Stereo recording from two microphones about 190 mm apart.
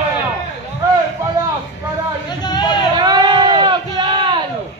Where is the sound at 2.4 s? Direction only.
20° left (ahead or behind).